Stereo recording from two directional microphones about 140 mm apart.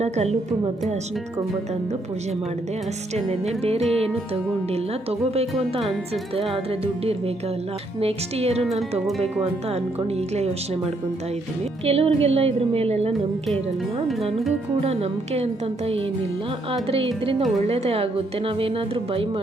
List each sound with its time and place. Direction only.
0.0 s speech: 50° right (ahead or behind)
3.2 s speech: 45° right (ahead or behind)
5.2 s speech: 45° right (ahead or behind)
8.6 s speech: centre (ahead or behind)
9.2 s speech: 45° right (ahead or behind)
11.9 s speech: 45° right (ahead or behind)
14.8 s speech: 50° right (ahead or behind)
16.9 s a woman's voice: 45° right (ahead or behind)